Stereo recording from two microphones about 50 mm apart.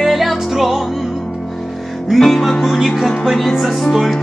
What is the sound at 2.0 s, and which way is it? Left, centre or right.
Music, centre.